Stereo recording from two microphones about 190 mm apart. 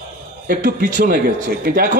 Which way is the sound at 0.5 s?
50° right (ahead or behind).